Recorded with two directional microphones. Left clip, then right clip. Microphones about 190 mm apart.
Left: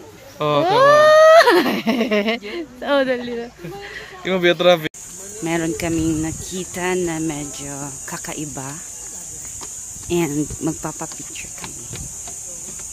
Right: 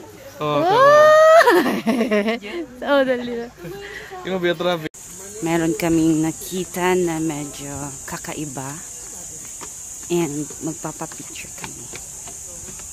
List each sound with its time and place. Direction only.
0.6 s speech: centre (ahead or behind)
4.2 s speech: 50° left (ahead or behind)
5.4 s speech: 10° right (ahead or behind)
7.1 s speech: centre (ahead or behind)
10.0 s speech: 5° left (ahead or behind)